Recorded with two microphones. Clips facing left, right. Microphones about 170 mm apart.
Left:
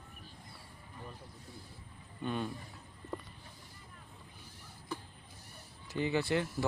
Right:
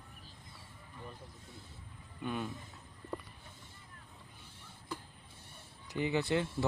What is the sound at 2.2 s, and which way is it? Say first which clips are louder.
Speech: left 2 dB; 5° right (ahead or behind).